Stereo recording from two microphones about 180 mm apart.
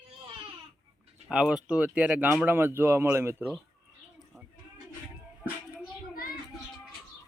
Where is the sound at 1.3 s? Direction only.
5° right (ahead or behind).